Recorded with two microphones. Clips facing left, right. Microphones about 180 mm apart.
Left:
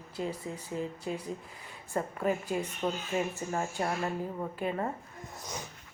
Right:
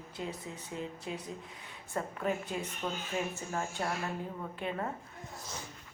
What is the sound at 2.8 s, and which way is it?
Speech, 30° left (ahead or behind).